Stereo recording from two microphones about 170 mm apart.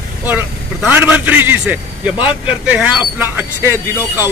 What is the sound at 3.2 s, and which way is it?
A man's voice, 10° right (ahead or behind).